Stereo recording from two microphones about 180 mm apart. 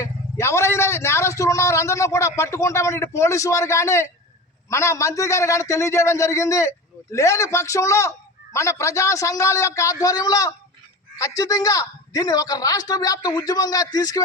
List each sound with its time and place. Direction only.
0.0 s a man's voice: 15° left (ahead or behind)